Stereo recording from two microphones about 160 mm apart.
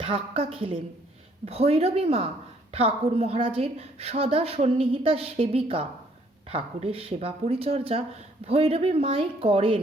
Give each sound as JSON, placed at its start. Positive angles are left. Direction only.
{"t": 0.0, "sound": "a woman's voice", "side_deg": -35}